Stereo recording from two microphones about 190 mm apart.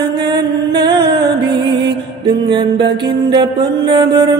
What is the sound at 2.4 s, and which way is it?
Music, 25° right (ahead or behind).